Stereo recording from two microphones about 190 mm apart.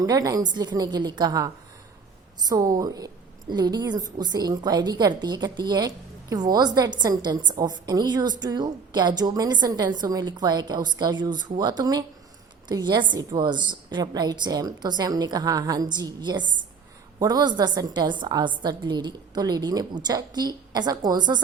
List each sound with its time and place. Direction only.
0.0 s a woman's voice: 20° right (ahead or behind)
2.5 s a woman's voice: 20° right (ahead or behind)